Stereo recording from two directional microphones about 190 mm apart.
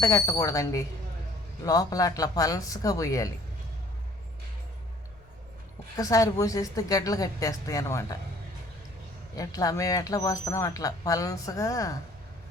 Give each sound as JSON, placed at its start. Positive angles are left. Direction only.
{"t": 0.0, "sound": "speech", "side_deg": 20}
{"t": 6.0, "sound": "speech", "side_deg": 20}
{"t": 9.3, "sound": "speech", "side_deg": 20}